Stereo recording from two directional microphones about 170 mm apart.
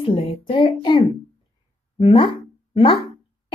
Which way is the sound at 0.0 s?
35° left (ahead or behind).